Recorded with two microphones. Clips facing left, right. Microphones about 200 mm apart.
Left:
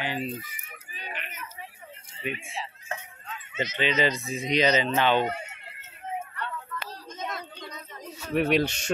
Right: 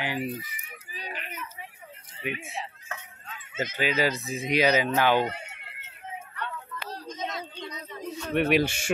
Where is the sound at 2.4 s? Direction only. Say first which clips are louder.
Right 1 dB; 65° right (ahead or behind).